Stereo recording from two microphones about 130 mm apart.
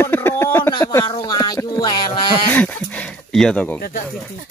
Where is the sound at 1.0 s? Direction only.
40° left (ahead or behind).